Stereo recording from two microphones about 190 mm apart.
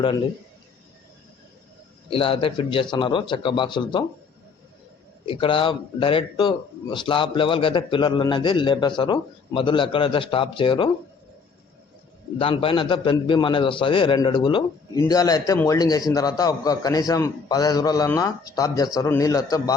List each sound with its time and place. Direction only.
2.0 s speech: 30° left (ahead or behind)
5.2 s speech: 30° left (ahead or behind)
12.4 s speech: 30° left (ahead or behind)